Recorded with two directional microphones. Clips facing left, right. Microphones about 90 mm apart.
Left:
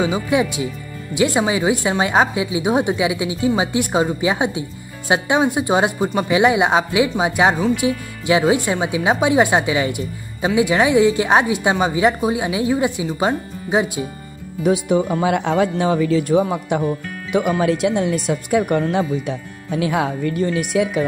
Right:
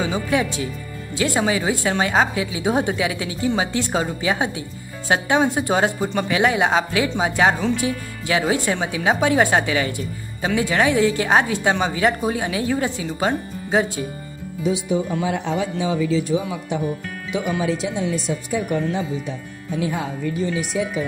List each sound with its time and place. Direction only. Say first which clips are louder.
0.0 s a woman's voice: left 3 dB; 15° left (ahead or behind)
14.6 s speech: left 5 dB; 60° left (ahead or behind)